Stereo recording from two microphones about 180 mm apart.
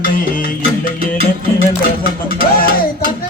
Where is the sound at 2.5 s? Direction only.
55° left (ahead or behind).